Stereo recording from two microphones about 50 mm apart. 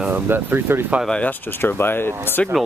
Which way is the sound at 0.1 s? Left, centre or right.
Right.